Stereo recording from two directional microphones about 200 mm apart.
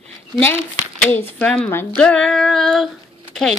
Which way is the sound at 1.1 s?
5° left (ahead or behind).